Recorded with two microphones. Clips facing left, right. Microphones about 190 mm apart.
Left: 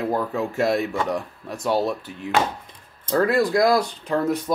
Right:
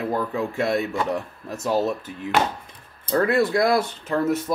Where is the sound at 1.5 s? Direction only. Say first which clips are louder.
Even; 30° left (ahead or behind).